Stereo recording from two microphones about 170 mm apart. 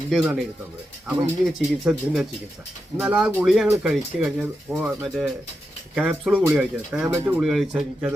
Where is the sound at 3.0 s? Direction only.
5° right (ahead or behind).